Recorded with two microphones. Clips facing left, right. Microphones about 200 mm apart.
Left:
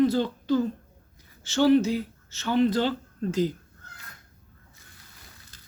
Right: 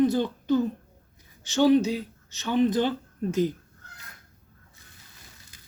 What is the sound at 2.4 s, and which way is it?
Speech, 20° right (ahead or behind).